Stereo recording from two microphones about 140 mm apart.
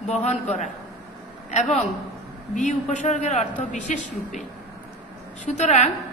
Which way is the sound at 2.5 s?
60° left (ahead or behind).